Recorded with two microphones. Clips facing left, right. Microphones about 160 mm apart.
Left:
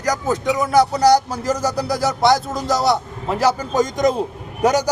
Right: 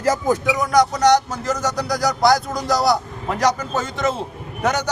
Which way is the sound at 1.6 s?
30° left (ahead or behind).